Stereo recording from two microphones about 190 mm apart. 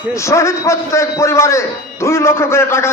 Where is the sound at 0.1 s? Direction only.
15° left (ahead or behind).